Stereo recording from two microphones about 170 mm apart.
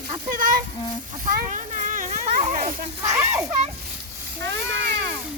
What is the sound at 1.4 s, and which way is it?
Children playing, 50° right (ahead or behind).